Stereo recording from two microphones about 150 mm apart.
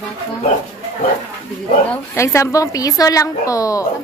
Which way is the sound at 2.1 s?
20° left (ahead or behind).